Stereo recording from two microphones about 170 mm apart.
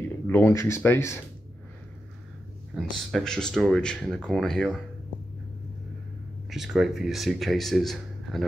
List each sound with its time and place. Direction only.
0.3 s speech: 15° left (ahead or behind)
2.7 s speech: centre (ahead or behind)
6.5 s speech: centre (ahead or behind)